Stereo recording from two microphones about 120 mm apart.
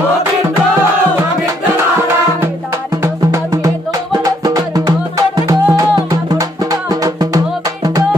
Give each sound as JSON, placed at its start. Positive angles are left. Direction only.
{"t": 4.1, "sound": "music", "side_deg": -30}